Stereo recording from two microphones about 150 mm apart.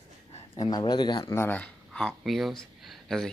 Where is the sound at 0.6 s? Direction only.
25° left (ahead or behind).